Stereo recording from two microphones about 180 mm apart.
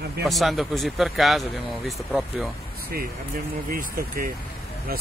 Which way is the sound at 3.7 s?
55° right (ahead or behind).